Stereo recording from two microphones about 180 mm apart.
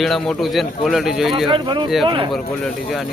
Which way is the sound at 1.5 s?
25° right (ahead or behind).